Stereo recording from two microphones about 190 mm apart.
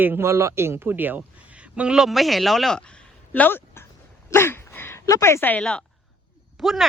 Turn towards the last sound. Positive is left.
turn(degrees=0)  # may be behind; listen again after turning